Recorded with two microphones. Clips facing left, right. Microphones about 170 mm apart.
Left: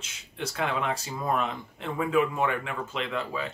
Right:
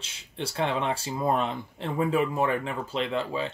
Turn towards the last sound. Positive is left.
turn(degrees=-30)  # may be behind; listen again after turning